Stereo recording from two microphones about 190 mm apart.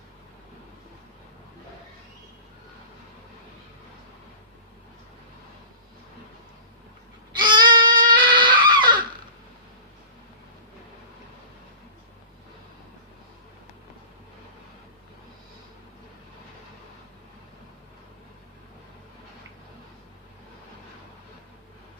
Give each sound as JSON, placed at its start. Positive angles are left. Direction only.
{"t": 7.3, "sound": "goat", "side_deg": -25}